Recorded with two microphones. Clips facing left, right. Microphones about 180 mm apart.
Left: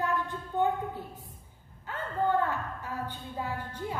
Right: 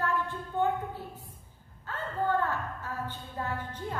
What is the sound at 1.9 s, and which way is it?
A woman's voice, 20° left (ahead or behind).